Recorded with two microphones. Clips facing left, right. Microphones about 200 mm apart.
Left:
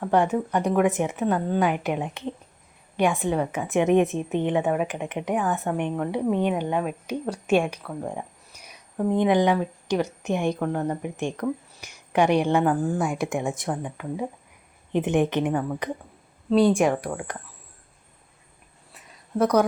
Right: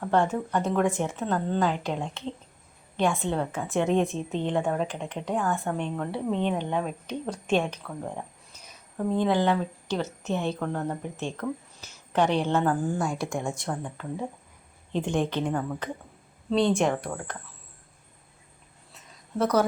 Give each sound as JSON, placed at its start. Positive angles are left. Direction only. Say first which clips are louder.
{"t": 0.0, "sound": "a woman's voice", "louder": "left 3 dB", "side_deg": 15}
{"t": 13.1, "sound": "a woman's voice", "louder": "left 4 dB", "side_deg": 20}